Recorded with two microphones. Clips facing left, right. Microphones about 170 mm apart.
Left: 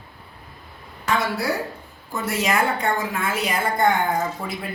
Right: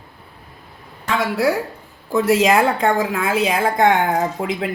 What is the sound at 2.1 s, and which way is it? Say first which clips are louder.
A woman's voice: right 9 dB; 90° right.